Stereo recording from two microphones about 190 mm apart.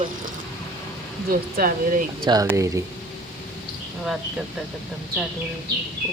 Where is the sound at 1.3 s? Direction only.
50° right (ahead or behind).